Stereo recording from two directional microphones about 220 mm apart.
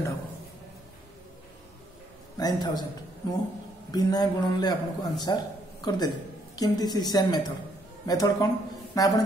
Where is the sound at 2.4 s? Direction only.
20° left (ahead or behind).